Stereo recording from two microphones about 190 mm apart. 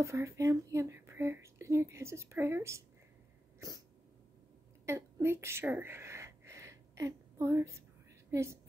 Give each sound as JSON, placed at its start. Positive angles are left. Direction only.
{"t": 0.0, "sound": "speech", "side_deg": -15}
{"t": 3.5, "sound": "dog", "side_deg": -20}
{"t": 4.8, "sound": "a sound", "side_deg": -15}
{"t": 8.3, "sound": "a woman's voice", "side_deg": -15}